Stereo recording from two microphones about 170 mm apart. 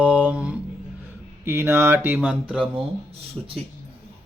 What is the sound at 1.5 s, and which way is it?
Speech, 15° right (ahead or behind).